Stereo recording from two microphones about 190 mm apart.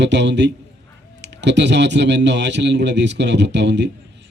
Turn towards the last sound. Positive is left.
turn(degrees=-65)  # may be behind; listen again after turning